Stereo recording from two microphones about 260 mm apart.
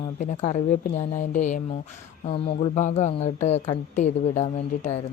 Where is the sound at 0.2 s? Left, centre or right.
Left.